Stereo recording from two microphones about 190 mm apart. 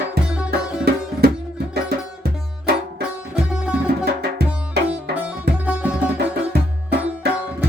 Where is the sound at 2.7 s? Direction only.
60° right (ahead or behind).